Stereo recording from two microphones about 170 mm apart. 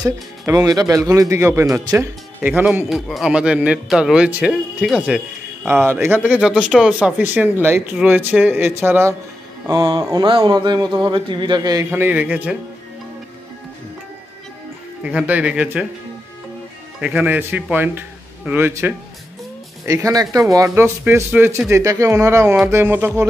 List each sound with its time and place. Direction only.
0.0 s a man's voice: 20° right (ahead or behind); by 5.2 s 5° right (ahead or behind)
5.7 s speech: 15° right (ahead or behind)
9.7 s speech: 25° right (ahead or behind); by 12.5 s 10° right (ahead or behind)
15.0 s speech: 10° right (ahead or behind)
17.0 s speech: 5° right (ahead or behind)